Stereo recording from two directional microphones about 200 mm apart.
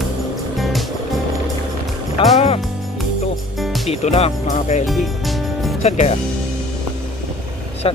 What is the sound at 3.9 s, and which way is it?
Speech, 30° left (ahead or behind).